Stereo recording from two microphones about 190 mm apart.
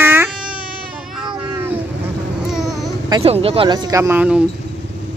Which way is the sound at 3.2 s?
30° right (ahead or behind).